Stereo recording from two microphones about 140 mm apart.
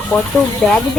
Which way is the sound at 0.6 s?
5° left (ahead or behind).